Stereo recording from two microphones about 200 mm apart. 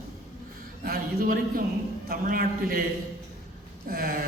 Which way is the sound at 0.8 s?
45° right (ahead or behind).